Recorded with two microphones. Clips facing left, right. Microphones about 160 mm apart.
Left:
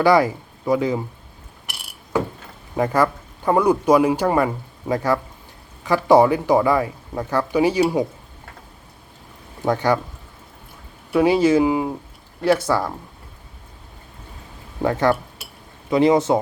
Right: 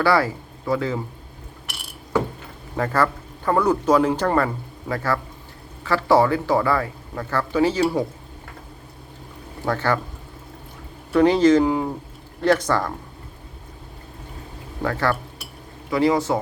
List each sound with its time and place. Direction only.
0.0 s speech: 15° left (ahead or behind)
2.7 s a man's voice: 15° left (ahead or behind)
9.6 s a man's voice: 15° left (ahead or behind)
11.1 s a man's voice: 10° left (ahead or behind)
14.8 s speech: 20° left (ahead or behind)